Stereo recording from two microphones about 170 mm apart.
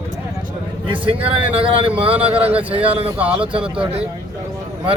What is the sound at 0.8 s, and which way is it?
Speech, 30° right (ahead or behind).